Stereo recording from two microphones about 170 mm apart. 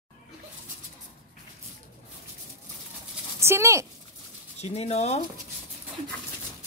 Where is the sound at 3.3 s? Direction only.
15° right (ahead or behind).